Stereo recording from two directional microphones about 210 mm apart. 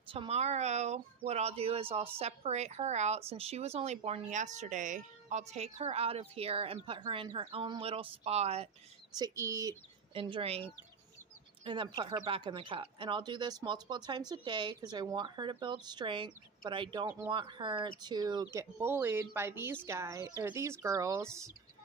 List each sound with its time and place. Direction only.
0.0 s a woman's voice: 25° right (ahead or behind)
9.1 s a woman's voice: 15° right (ahead or behind)